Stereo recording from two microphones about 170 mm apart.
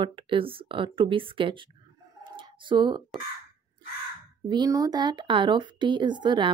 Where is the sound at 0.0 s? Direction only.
30° right (ahead or behind).